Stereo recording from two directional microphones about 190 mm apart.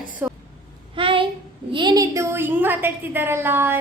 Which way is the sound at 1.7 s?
20° right (ahead or behind).